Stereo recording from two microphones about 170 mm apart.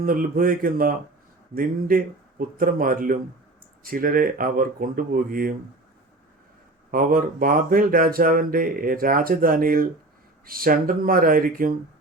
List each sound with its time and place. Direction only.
0.0 s speech: 55° right (ahead or behind)
6.9 s speech: 55° right (ahead or behind)